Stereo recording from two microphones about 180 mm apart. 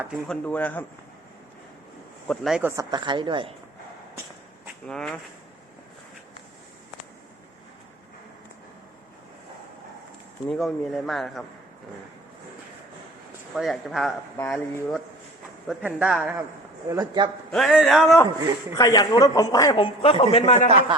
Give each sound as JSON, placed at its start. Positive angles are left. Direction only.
{"t": 0.3, "sound": "speech", "side_deg": 10}
{"t": 2.2, "sound": "speech", "side_deg": 0}
{"t": 2.9, "sound": "a woman's voice", "side_deg": -25}
{"t": 4.9, "sound": "speech", "side_deg": 5}
{"t": 10.5, "sound": "speech", "side_deg": 0}
{"t": 13.5, "sound": "speech", "side_deg": 0}
{"t": 15.6, "sound": "speech", "side_deg": -5}
{"t": 16.9, "sound": "a woman's voice", "side_deg": -20}
{"t": 17.5, "sound": "speech", "side_deg": 0}
{"t": 18.8, "sound": "a man's voice", "side_deg": 20}